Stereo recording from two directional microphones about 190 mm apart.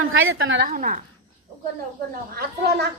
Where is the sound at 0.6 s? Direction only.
40° right (ahead or behind).